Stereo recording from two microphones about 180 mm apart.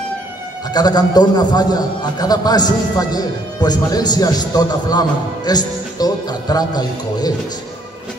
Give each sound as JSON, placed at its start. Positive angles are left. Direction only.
{"t": 0.7, "sound": "a man's voice", "side_deg": 20}